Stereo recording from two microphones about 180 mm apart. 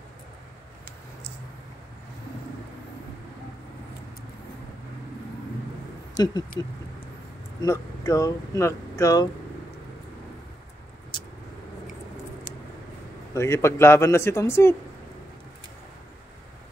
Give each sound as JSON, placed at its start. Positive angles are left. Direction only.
{"t": 6.1, "sound": "speech", "side_deg": 25}
{"t": 7.6, "sound": "speech", "side_deg": 15}
{"t": 13.3, "sound": "speech", "side_deg": 15}